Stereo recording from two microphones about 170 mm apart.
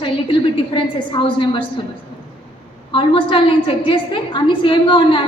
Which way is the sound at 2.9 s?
30° left (ahead or behind).